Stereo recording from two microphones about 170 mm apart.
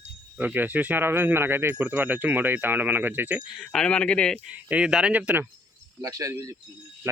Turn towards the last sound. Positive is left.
turn(degrees=-20)  # may be behind; listen again after turning